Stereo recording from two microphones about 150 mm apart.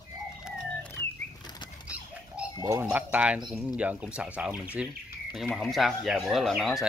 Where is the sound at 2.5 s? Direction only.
20° right (ahead or behind).